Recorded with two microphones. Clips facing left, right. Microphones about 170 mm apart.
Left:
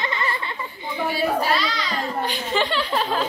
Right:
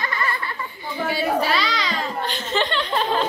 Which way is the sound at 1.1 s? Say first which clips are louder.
Right 1 dB; 75° right (ahead or behind).